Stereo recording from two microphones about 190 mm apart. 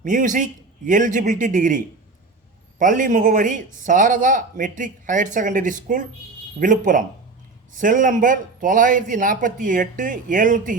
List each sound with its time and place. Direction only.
0.0 s a man's voice: 45° right (ahead or behind)